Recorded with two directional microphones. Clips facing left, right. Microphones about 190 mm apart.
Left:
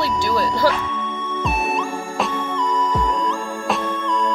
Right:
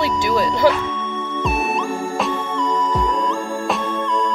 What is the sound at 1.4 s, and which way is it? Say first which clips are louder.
Music: right 1 dB; centre (ahead or behind).